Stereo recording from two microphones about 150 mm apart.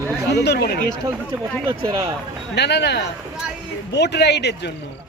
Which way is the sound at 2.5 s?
90° left.